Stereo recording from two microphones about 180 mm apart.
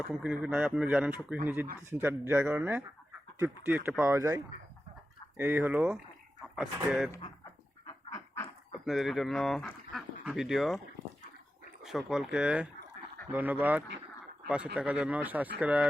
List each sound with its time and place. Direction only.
0.0 s speech: 5° right (ahead or behind)
5.4 s speech: 10° right (ahead or behind)
7.9 s duck: 20° left (ahead or behind)
8.8 s speech: centre (ahead or behind)
11.8 s speech: centre (ahead or behind)